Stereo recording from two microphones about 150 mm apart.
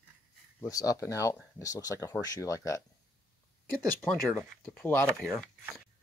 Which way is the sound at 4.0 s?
5° left (ahead or behind).